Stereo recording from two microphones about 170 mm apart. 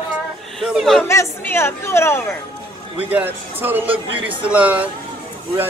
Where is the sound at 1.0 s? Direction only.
15° left (ahead or behind).